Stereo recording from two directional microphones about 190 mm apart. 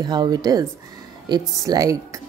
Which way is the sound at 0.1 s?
20° right (ahead or behind).